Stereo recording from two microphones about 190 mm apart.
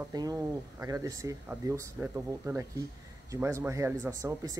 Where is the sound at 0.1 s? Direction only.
20° right (ahead or behind).